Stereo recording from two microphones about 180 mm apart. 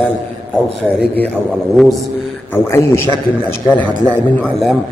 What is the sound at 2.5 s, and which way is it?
A man's voice, 15° left (ahead or behind).